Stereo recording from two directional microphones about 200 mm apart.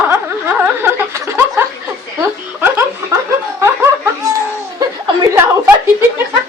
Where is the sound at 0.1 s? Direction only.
10° right (ahead or behind).